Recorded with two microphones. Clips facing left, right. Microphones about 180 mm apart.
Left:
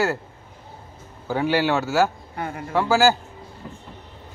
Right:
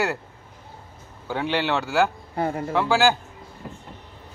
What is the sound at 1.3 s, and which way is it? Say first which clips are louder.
Speech: left 3 dB; 5° left (ahead or behind).